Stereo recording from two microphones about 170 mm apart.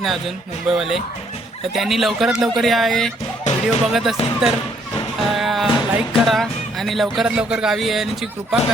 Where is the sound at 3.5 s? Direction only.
45° left (ahead or behind).